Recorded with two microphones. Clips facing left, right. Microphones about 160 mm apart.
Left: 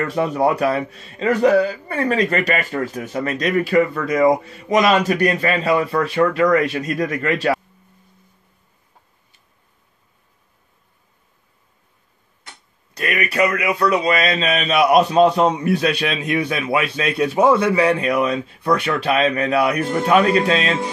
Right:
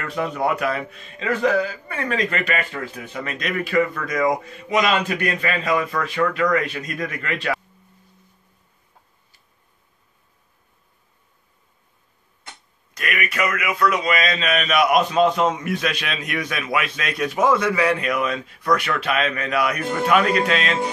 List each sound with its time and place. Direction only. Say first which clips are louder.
0.0 s a man's voice: left 5 dB; 35° left (ahead or behind)
4.6 s a man's voice: left 5 dB; 40° left (ahead or behind)
12.9 s a man's voice: left 5 dB; 35° left (ahead or behind)